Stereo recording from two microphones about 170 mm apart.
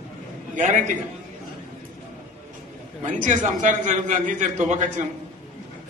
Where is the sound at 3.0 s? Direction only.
45° right (ahead or behind).